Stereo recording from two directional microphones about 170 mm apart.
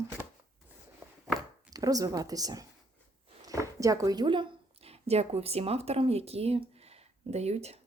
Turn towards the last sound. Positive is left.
turn(degrees=-40)  # may be behind; listen again after turning